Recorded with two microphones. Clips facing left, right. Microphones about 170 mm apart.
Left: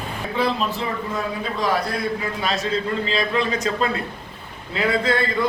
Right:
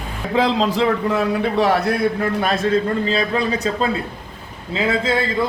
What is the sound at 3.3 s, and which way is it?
A man's voice, 35° right (ahead or behind).